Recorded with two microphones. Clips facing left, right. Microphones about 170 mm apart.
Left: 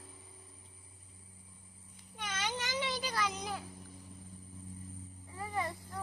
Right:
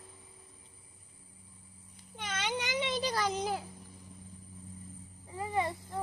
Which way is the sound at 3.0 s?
35° right (ahead or behind).